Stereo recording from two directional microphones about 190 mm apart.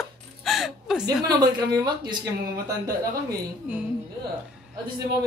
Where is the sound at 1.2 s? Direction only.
20° right (ahead or behind).